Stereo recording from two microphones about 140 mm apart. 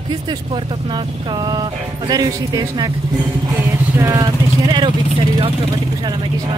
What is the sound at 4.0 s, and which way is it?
Speech, 25° right (ahead or behind).